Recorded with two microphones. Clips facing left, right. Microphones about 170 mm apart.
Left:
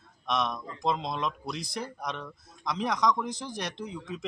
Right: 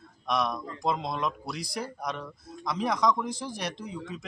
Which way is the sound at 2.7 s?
20° left (ahead or behind).